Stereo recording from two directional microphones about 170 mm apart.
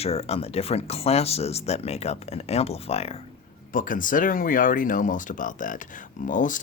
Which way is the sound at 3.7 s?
50° left (ahead or behind).